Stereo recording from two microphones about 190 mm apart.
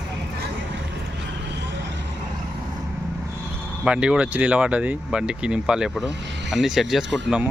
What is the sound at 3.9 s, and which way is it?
Speech, 5° right (ahead or behind).